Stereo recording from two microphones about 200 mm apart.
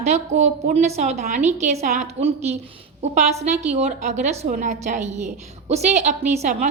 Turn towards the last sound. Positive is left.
turn(degrees=-35)  # may be behind; listen again after turning